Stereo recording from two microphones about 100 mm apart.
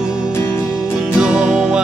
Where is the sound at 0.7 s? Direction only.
10° right (ahead or behind).